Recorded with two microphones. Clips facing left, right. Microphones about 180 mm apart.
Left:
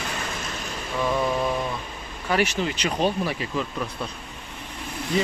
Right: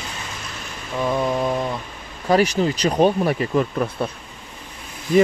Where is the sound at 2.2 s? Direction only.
40° right (ahead or behind); by 4.1 s 55° right (ahead or behind).